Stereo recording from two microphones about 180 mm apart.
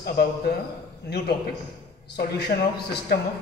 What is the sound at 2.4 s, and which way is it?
Speech, 65° left (ahead or behind).